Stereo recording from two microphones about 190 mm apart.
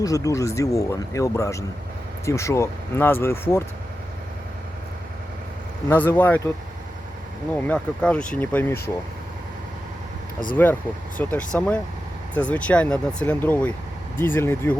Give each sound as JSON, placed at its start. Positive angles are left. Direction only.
{"t": 0.0, "sound": "speech", "side_deg": 20}
{"t": 5.9, "sound": "speech", "side_deg": 10}
{"t": 7.5, "sound": "speech", "side_deg": 5}
{"t": 10.5, "sound": "speech", "side_deg": 10}